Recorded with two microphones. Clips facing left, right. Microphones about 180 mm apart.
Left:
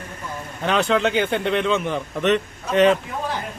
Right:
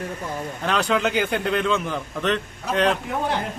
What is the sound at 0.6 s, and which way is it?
A man's voice, centre (ahead or behind).